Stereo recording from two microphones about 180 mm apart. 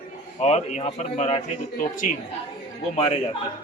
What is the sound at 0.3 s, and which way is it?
A man's voice, 35° left (ahead or behind).